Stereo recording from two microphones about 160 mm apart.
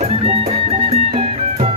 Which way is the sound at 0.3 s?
40° right (ahead or behind).